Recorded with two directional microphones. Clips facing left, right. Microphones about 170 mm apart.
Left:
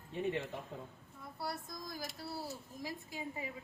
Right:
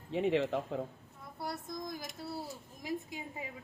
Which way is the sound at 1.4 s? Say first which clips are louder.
Right 3 dB; 20° right (ahead or behind).